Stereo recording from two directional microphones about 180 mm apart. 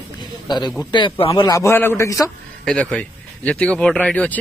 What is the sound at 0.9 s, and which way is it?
A man's voice, 30° left (ahead or behind).